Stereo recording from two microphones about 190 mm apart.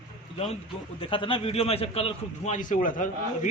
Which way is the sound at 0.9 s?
25° left (ahead or behind).